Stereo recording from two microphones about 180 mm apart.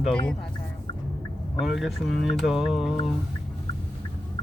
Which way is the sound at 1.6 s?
Centre (ahead or behind).